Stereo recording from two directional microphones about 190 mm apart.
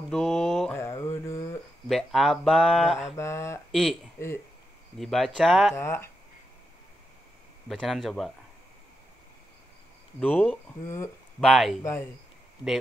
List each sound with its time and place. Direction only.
0.1 s mantra: centre (ahead or behind)
0.7 s mantra: 15° left (ahead or behind)
1.9 s speech: centre (ahead or behind)
3.2 s speech: 15° left (ahead or behind)
4.9 s speech: centre (ahead or behind)
5.8 s speech: 15° left (ahead or behind)
7.6 s speech: centre (ahead or behind)
10.2 s speech: 5° left (ahead or behind)
11.8 s speech: 10° left (ahead or behind)